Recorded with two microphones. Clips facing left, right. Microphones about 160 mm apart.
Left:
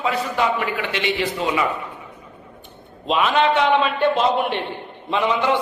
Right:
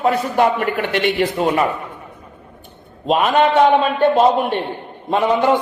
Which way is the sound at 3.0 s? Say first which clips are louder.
Right 3 dB; 45° right (ahead or behind).